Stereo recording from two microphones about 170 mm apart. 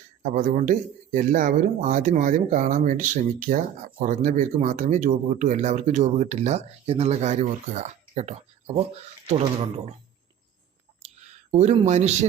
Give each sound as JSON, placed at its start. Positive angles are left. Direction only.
{"t": 0.2, "sound": "speech", "side_deg": -50}
{"t": 11.0, "sound": "a sound", "side_deg": -35}
{"t": 11.5, "sound": "speech", "side_deg": -40}